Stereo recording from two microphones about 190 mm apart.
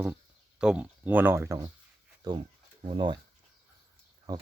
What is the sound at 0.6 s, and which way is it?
Speech, 5° right (ahead or behind).